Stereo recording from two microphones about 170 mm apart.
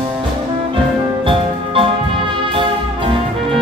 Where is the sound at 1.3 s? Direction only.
30° right (ahead or behind).